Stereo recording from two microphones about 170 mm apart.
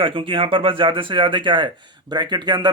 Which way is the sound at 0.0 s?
30° right (ahead or behind).